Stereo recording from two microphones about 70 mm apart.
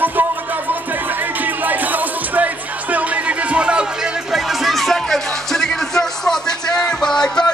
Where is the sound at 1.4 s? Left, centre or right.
Right.